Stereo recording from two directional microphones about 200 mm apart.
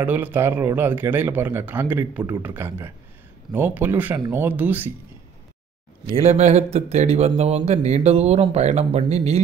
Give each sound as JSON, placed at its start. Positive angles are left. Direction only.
{"t": 0.0, "sound": "a man's voice", "side_deg": -10}
{"t": 6.0, "sound": "speech", "side_deg": -30}